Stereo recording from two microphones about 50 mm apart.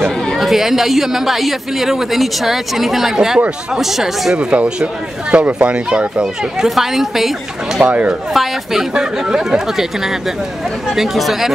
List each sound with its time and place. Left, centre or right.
0.4 s a woman's voice: centre
4.4 s speech: right
6.7 s a woman's voice: centre
7.8 s speech: right
8.3 s a woman's voice: centre
8.9 s speech: centre
11.0 s a woman's voice: centre